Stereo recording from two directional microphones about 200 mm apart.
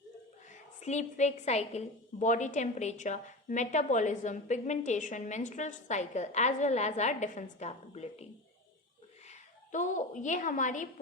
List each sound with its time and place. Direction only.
0.8 s a woman's voice: 35° left (ahead or behind)
9.7 s a woman's voice: 40° left (ahead or behind)